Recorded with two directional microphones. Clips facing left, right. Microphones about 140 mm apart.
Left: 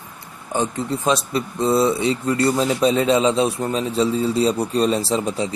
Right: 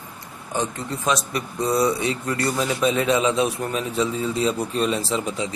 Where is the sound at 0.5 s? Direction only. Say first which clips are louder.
Left 4 dB; 30° left (ahead or behind).